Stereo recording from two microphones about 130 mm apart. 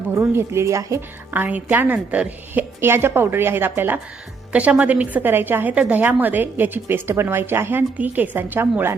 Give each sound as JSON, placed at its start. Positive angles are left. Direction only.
{"t": 0.1, "sound": "a woman's voice", "side_deg": -20}